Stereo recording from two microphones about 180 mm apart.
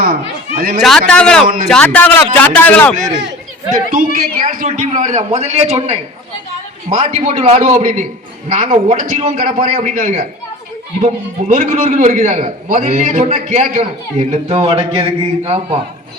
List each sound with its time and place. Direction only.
0.8 s a man's voice: centre (ahead or behind)
3.9 s a man's voice: 50° right (ahead or behind); by 15.8 s 30° right (ahead or behind)